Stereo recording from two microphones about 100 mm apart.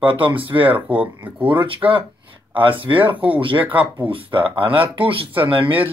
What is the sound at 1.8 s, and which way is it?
Speech, 30° right (ahead or behind).